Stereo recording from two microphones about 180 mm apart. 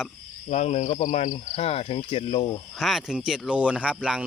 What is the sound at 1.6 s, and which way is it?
Speech, 35° left (ahead or behind).